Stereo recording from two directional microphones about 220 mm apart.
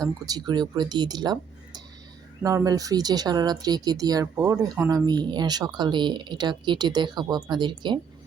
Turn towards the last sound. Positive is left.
turn(degrees=-20)  # may be behind; listen again after turning